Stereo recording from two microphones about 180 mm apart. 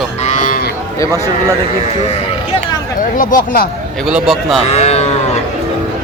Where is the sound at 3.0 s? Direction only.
50° left (ahead or behind).